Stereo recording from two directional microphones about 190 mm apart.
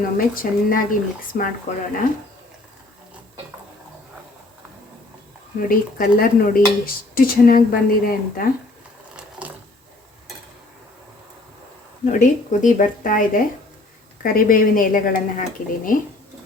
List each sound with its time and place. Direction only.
0.3 s speech: 45° left (ahead or behind)
5.5 s speech: 50° left (ahead or behind)
12.0 s speech: 40° left (ahead or behind)